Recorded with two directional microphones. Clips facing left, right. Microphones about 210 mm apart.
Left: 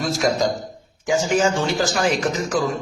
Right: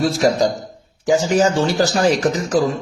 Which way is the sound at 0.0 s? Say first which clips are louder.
Right 4 dB; 35° right (ahead or behind).